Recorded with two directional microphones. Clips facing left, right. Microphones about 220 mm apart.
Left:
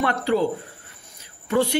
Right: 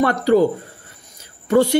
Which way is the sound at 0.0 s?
40° right (ahead or behind).